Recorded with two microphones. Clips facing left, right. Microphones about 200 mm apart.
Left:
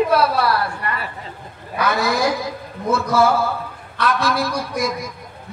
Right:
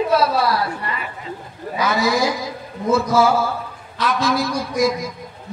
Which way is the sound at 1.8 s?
60° left (ahead or behind).